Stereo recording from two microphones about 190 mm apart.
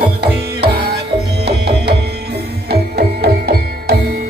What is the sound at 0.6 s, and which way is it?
Music, 60° right (ahead or behind).